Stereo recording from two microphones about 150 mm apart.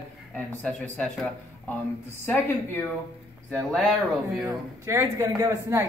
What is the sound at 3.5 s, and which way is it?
Speech, 5° left (ahead or behind).